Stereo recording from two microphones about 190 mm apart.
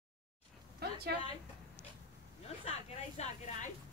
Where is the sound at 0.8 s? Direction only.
55° right (ahead or behind).